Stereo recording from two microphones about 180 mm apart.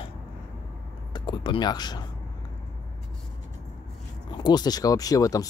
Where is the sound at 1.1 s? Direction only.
25° left (ahead or behind).